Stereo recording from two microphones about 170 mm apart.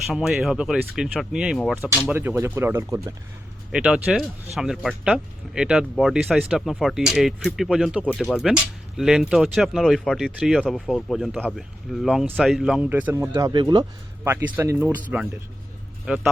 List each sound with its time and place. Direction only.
0.1 s speech: centre (ahead or behind)
2.1 s speech: 15° right (ahead or behind)
13.5 s speech: 25° right (ahead or behind)
14.3 s speech: 15° right (ahead or behind)